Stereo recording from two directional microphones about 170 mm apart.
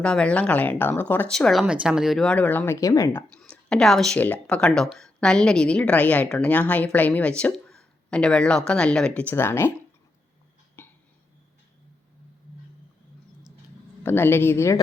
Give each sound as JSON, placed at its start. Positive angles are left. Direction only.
{"t": 0.0, "sound": "speech", "side_deg": 5}
{"t": 10.8, "sound": "a sound", "side_deg": 15}
{"t": 14.0, "sound": "speech", "side_deg": 15}